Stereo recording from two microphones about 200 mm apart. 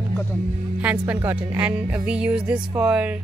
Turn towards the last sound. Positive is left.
turn(degrees=-5)  # may be behind; listen again after turning